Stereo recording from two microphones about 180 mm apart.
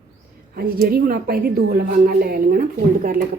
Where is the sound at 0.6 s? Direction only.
55° right (ahead or behind).